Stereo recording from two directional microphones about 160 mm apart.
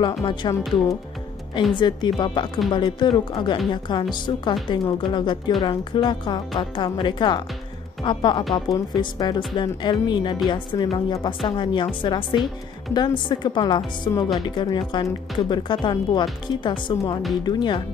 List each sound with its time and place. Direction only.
0.0 s a woman's voice: 30° left (ahead or behind)